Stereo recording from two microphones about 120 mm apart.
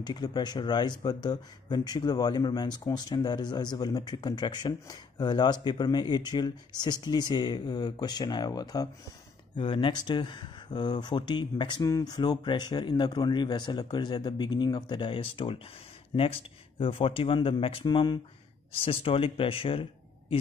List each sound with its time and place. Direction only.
0.0 s speech: 35° left (ahead or behind)
18.7 s speech: 50° left (ahead or behind)